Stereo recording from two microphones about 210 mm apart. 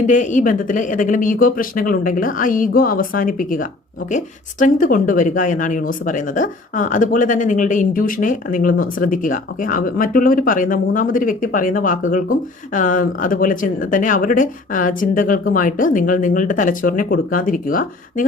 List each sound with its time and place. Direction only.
0.1 s speech: 35° left (ahead or behind)